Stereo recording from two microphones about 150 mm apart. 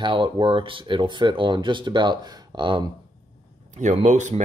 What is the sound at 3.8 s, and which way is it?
Speech, 55° right (ahead or behind).